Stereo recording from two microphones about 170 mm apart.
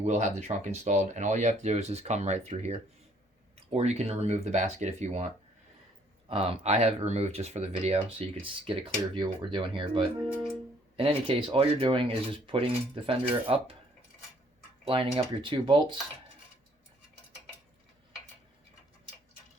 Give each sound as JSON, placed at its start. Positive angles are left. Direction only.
{"t": 0.0, "sound": "speech", "side_deg": -45}
{"t": 14.8, "sound": "speech", "side_deg": -30}